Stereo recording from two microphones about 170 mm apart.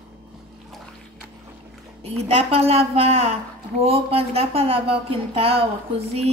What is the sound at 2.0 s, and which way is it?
Speech, 35° right (ahead or behind).